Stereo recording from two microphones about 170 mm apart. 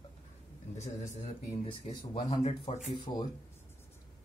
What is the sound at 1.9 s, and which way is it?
Speech, 25° left (ahead or behind).